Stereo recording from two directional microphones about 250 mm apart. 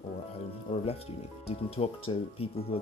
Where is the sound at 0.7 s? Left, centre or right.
Centre.